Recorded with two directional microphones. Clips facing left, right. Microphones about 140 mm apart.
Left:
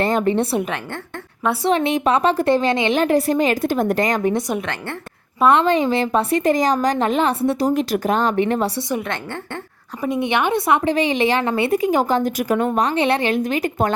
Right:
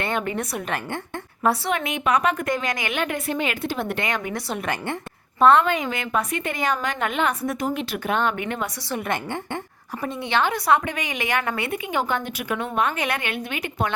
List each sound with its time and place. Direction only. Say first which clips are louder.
0.0 s a woman's voice: left 8 dB; 40° left (ahead or behind)
1.6 s a woman's voice: left 7 dB; 30° left (ahead or behind)
4.6 s a woman's voice: right 1 dB; 10° right (ahead or behind)
5.5 s a woman's voice: left 5 dB; 30° left (ahead or behind)
10.0 s a woman's voice: left 4 dB; 15° left (ahead or behind); by 13.9 s 40° left (ahead or behind)